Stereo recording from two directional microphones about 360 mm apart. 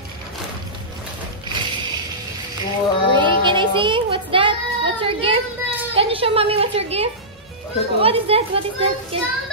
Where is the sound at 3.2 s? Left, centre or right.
Centre.